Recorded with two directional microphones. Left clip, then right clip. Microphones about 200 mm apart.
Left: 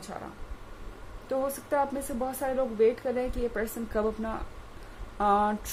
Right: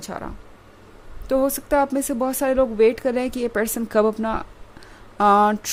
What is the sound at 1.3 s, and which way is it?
Speech, 50° right (ahead or behind).